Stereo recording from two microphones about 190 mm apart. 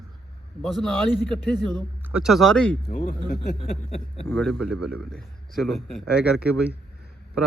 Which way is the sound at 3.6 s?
30° left (ahead or behind).